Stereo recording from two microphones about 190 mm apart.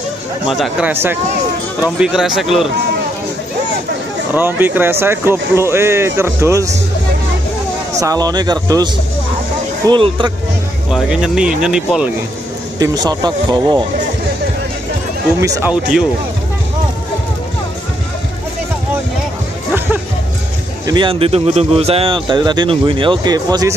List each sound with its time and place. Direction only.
0.5 s speech: 5° right (ahead or behind)
4.3 s speech: 10° right (ahead or behind)
8.0 s speech: 20° right (ahead or behind)
10.9 s speech: 5° right (ahead or behind)
12.7 s speech: 20° right (ahead or behind)
15.4 s speech: 15° right (ahead or behind)
20.8 s speech: 25° right (ahead or behind)